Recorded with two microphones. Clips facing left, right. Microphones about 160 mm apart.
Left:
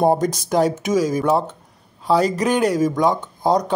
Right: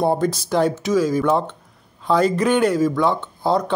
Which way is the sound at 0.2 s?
45° left (ahead or behind).